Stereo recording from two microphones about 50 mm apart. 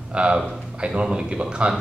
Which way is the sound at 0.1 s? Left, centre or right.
Right.